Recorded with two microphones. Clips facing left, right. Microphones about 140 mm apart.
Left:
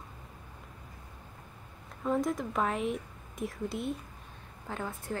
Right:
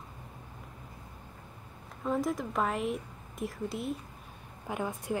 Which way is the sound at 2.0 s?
Centre (ahead or behind).